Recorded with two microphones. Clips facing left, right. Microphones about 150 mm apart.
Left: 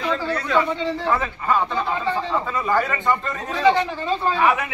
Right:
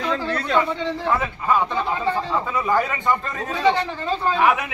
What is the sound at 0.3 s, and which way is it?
Speech, 10° left (ahead or behind).